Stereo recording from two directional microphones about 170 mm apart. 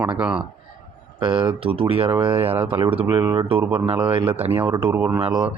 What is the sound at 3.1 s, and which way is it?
Speech, 25° right (ahead or behind).